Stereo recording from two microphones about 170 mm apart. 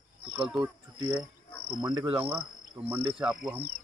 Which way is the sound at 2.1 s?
10° right (ahead or behind).